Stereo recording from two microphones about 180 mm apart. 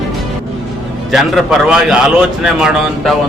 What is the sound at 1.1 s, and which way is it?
A man's voice, centre (ahead or behind).